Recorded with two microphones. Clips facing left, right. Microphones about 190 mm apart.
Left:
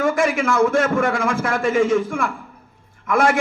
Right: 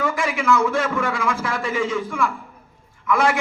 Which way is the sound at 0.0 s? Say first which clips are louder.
Left 4 dB; 50° left (ahead or behind).